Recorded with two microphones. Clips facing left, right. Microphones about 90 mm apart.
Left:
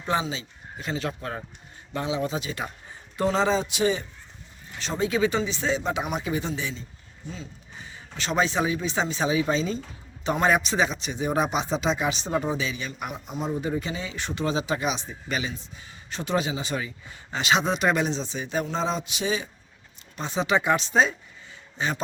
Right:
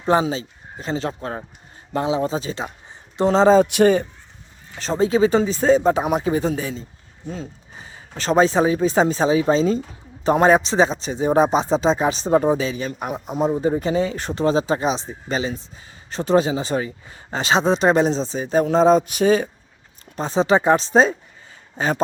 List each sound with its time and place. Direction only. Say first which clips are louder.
0.0 s speech: right 8 dB; 40° right (ahead or behind)
3.6 s speech: right 10 dB; 55° right (ahead or behind)
4.8 s speech: right 7 dB; 35° right (ahead or behind)
18.6 s a sound: right 16 dB; 45° right (ahead or behind)
20.1 s speech: right 7 dB; 35° right (ahead or behind)
21.8 s a sound: right 7 dB; 40° right (ahead or behind)